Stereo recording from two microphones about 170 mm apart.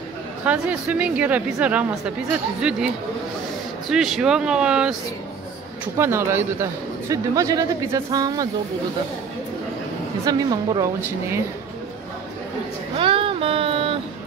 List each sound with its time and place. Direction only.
0.5 s a woman's voice: 10° right (ahead or behind)
3.9 s speech: 5° right (ahead or behind)
5.9 s a man's voice: 15° right (ahead or behind)
10.2 s a man's voice: 20° right (ahead or behind)
12.9 s a sound: 30° right (ahead or behind)